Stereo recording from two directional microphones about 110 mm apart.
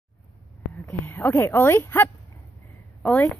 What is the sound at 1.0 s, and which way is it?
A woman's voice, 20° left (ahead or behind).